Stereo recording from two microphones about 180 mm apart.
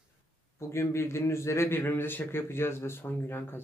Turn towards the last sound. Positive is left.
turn(degrees=10)  # may be behind; listen again after turning